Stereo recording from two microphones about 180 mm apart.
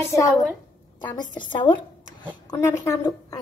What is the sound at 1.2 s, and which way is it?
A woman's voice, 25° left (ahead or behind).